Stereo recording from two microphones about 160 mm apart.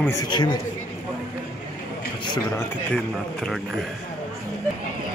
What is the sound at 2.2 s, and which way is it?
Speech, 25° left (ahead or behind).